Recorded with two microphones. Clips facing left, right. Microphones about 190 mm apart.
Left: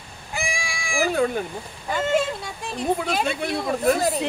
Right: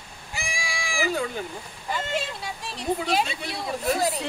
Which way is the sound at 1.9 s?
50° left (ahead or behind).